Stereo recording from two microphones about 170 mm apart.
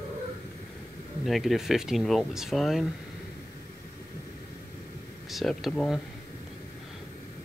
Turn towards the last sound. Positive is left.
turn(degrees=0)  # may be behind; listen again after turning